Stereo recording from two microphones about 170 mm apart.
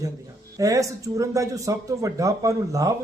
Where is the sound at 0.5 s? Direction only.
20° right (ahead or behind).